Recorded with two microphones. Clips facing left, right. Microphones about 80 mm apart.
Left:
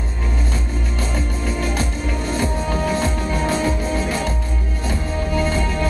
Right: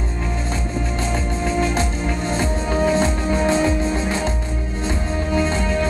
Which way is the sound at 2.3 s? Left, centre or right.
Right.